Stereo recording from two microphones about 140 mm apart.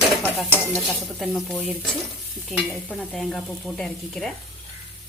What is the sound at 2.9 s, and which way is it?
Speech, 5° left (ahead or behind).